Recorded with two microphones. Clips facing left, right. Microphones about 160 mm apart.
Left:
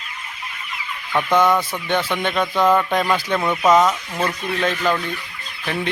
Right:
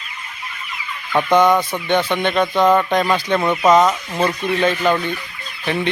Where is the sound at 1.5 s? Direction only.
20° right (ahead or behind).